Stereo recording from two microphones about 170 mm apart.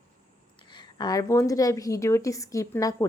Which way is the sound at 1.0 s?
20° left (ahead or behind).